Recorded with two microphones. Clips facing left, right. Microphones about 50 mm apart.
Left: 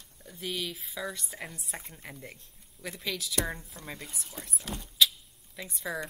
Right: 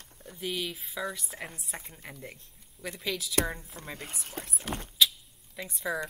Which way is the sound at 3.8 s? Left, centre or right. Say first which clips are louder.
Right 1 dB; right.